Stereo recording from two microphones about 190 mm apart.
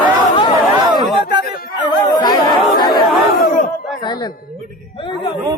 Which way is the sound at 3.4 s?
45° left (ahead or behind).